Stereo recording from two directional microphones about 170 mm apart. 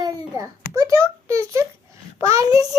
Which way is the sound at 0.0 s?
20° right (ahead or behind).